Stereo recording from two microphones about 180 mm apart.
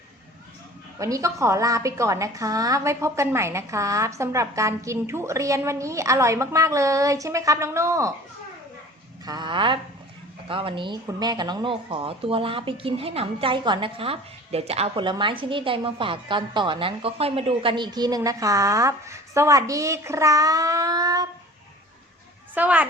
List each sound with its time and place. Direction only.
0.9 s a woman's voice: 20° right (ahead or behind)
9.2 s speech: 25° right (ahead or behind)
22.5 s a woman's voice: 10° right (ahead or behind)